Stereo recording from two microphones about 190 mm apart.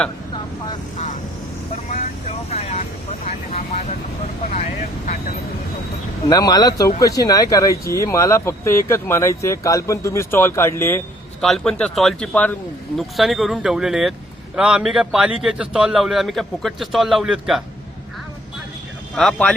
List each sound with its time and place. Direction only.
2.0 s speech: 35° left (ahead or behind)
6.2 s speech: 20° left (ahead or behind)
11.3 s a man's voice: centre (ahead or behind)
19.1 s a man's voice: 5° left (ahead or behind)